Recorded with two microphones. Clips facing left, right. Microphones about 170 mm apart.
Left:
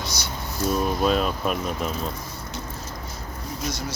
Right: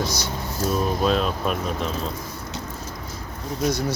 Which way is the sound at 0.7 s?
5° left (ahead or behind).